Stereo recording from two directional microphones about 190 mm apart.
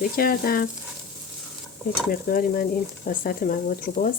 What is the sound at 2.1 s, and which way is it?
Speech, 50° left (ahead or behind).